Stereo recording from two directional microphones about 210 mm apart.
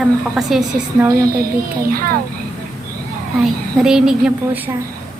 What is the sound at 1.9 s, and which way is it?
Speech, 45° right (ahead or behind).